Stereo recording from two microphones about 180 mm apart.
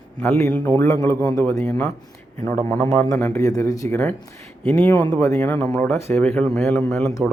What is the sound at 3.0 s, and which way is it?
Speech, 10° left (ahead or behind).